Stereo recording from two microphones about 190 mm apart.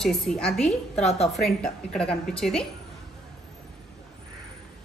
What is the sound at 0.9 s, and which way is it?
Speech, 35° left (ahead or behind).